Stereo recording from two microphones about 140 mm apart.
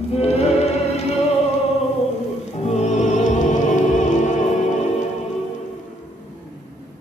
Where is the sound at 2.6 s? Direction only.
55° left (ahead or behind).